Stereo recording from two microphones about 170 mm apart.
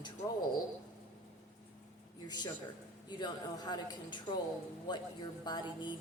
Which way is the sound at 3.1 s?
25° left (ahead or behind).